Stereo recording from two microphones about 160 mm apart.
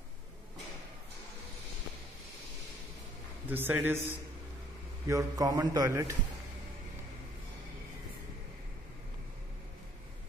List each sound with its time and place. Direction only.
3.4 s a man's voice: 10° right (ahead or behind)
5.0 s a man's voice: 20° right (ahead or behind)